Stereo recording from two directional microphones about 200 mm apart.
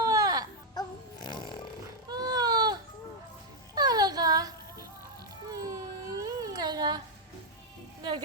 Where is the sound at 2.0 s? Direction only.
20° right (ahead or behind).